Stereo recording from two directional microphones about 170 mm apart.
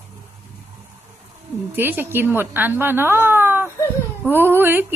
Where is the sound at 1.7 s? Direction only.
10° right (ahead or behind).